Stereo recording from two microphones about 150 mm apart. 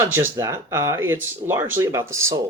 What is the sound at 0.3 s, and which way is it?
Speech, 20° right (ahead or behind).